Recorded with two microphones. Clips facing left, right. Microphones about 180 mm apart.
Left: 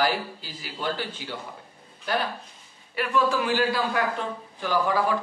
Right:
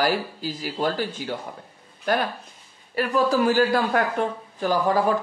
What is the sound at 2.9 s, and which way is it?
Speech, 40° right (ahead or behind).